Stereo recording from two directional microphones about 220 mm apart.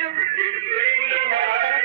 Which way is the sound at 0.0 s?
30° right (ahead or behind).